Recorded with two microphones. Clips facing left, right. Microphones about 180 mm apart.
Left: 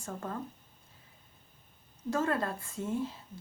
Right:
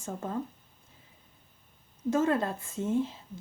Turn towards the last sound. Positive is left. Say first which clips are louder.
# right 5 dB
turn(degrees=-20)  # may be behind; listen again after turning